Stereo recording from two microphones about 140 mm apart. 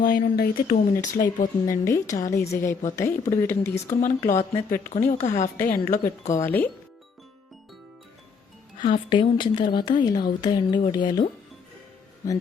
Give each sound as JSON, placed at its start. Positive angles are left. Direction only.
{"t": 0.0, "sound": "speech", "side_deg": 90}
{"t": 1.7, "sound": "a woman's voice", "side_deg": 20}
{"t": 3.8, "sound": "speech", "side_deg": 65}
{"t": 5.6, "sound": "speech", "side_deg": 85}
{"t": 6.4, "sound": "speech", "side_deg": 15}
{"t": 8.8, "sound": "speech", "side_deg": 35}